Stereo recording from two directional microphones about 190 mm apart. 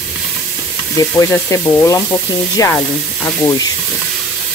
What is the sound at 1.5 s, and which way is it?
Sizzle, 15° left (ahead or behind).